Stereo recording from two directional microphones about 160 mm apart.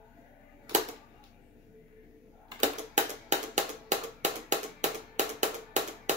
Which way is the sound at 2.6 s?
50° right (ahead or behind).